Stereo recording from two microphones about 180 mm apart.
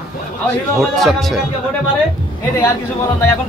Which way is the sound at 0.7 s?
Centre (ahead or behind).